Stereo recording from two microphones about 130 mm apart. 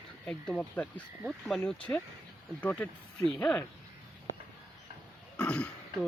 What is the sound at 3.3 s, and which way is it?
Speech, 10° left (ahead or behind).